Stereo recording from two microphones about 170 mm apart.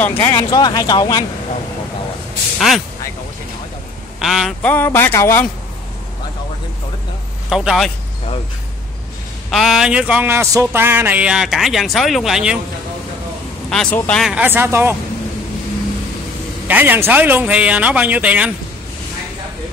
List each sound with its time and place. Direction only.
0.0 s a man's voice: 10° left (ahead or behind)
0.5 s speech: 25° left (ahead or behind)
4.2 s speech: centre (ahead or behind)
4.6 s a man's voice: 10° left (ahead or behind)
7.4 s speech: centre (ahead or behind)
9.5 s speech: centre (ahead or behind)
13.7 s a man's voice: 5° left (ahead or behind)
14.2 s a man's voice: 10° right (ahead or behind)
16.6 s a man's voice: 10° right (ahead or behind)